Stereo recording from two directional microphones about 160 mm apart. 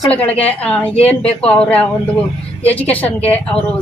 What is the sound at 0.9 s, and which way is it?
Speech, 40° left (ahead or behind).